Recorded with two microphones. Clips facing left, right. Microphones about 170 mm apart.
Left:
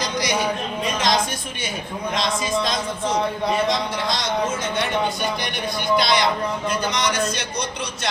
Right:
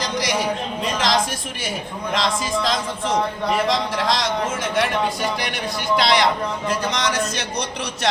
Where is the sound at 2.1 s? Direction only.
90° right.